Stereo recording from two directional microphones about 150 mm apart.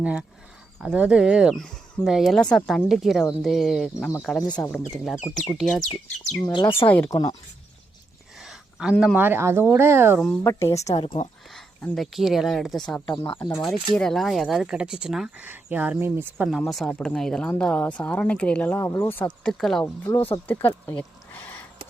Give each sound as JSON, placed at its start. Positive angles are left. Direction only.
{"t": 0.0, "sound": "speech", "side_deg": -5}
{"t": 6.4, "sound": "speech", "side_deg": 30}
{"t": 6.8, "sound": "speech", "side_deg": 10}
{"t": 7.1, "sound": "a woman's voice", "side_deg": 25}
{"t": 8.4, "sound": "a woman's voice", "side_deg": -5}
{"t": 10.4, "sound": "a woman's voice", "side_deg": 20}
{"t": 10.8, "sound": "speech", "side_deg": 45}
{"t": 11.5, "sound": "speech", "side_deg": 0}
{"t": 13.1, "sound": "speech", "side_deg": 30}
{"t": 13.6, "sound": "speech", "side_deg": 0}
{"t": 16.5, "sound": "speech", "side_deg": 0}
{"t": 19.8, "sound": "speech", "side_deg": 15}
{"t": 20.5, "sound": "a sound", "side_deg": 15}